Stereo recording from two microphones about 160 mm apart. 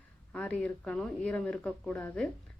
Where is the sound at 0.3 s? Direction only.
10° left (ahead or behind).